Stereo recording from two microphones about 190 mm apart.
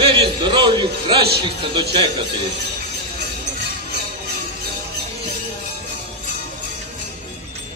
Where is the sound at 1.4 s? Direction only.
25° right (ahead or behind).